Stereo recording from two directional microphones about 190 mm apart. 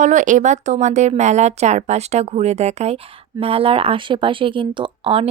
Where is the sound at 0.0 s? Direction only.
40° right (ahead or behind).